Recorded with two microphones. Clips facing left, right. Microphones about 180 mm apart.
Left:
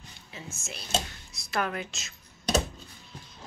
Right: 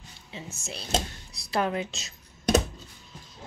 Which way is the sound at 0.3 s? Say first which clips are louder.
Right 3 dB; 30° right (ahead or behind).